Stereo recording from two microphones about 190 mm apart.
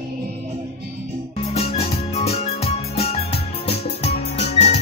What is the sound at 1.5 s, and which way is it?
Music, 30° left (ahead or behind).